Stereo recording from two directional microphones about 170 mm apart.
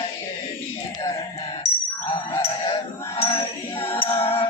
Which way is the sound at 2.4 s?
30° left (ahead or behind).